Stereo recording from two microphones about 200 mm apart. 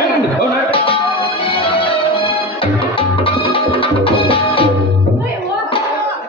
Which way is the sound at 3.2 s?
25° left (ahead or behind).